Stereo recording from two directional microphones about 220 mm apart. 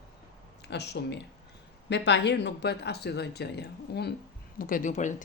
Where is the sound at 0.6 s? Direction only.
50° left (ahead or behind).